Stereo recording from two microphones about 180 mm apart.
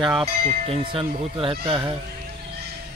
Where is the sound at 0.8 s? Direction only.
30° right (ahead or behind).